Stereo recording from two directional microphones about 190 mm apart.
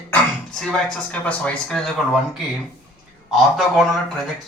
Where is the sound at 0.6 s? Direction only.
5° left (ahead or behind).